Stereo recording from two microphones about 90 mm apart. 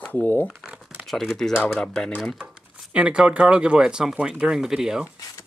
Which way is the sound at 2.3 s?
10° right (ahead or behind).